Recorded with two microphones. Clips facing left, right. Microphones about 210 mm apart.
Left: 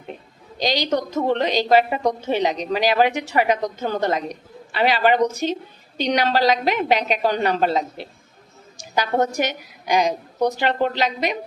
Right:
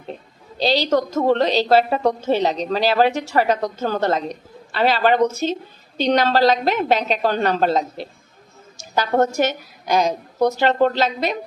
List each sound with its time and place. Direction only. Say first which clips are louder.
0.6 s a woman's voice: right 3 dB; 15° left (ahead or behind)
0.9 s a woman's voice: right 3 dB; 40° right (ahead or behind)
1.4 s a woman's voice: right 1 dB; 15° left (ahead or behind)
7.6 s a woman's voice: right 2 dB; 40° right (ahead or behind)
8.8 s a woman's voice: right 2 dB; 15° left (ahead or behind)